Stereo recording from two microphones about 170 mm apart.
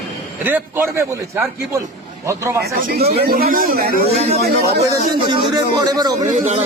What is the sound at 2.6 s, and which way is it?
A man's voice, 65° right (ahead or behind).